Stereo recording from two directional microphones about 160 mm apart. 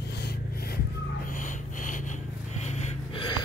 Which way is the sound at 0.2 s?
75° left (ahead or behind).